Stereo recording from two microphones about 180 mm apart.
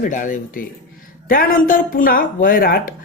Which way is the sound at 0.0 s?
45° left (ahead or behind).